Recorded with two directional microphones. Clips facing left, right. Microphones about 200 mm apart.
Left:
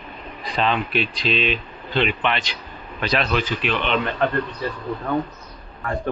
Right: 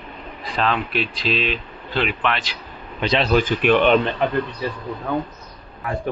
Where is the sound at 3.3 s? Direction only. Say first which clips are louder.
Right 7 dB; 50° right (ahead or behind).